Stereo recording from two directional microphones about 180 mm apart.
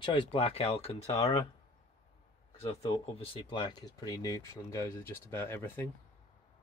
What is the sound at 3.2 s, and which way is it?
Speech, 30° left (ahead or behind).